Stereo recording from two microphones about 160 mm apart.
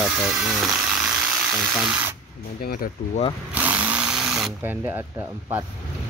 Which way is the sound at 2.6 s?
70° left (ahead or behind).